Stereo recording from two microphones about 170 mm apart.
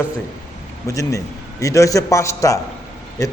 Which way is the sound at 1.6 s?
20° left (ahead or behind).